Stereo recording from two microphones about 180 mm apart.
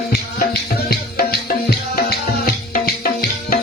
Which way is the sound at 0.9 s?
55° left (ahead or behind).